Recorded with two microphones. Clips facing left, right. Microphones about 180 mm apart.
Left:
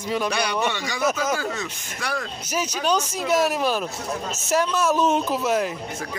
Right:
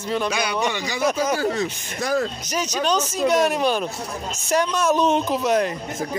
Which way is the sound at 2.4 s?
10° left (ahead or behind).